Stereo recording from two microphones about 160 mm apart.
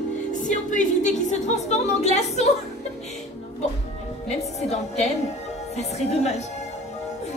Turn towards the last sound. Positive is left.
turn(degrees=45)  # may be behind; listen again after turning